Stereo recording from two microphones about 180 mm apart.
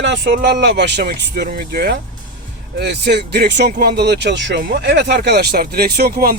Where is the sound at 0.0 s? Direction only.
75° right (ahead or behind).